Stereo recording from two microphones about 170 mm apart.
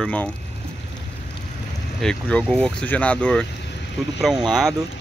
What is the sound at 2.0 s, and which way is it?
Speech, 5° left (ahead or behind).